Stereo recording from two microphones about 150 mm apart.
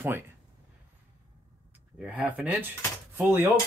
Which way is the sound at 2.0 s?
10° right (ahead or behind).